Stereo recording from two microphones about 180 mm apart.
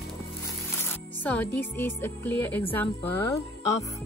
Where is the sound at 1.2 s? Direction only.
10° left (ahead or behind).